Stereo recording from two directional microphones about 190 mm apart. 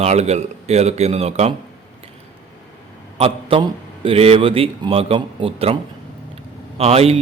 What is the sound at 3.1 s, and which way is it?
A man's voice, 30° right (ahead or behind).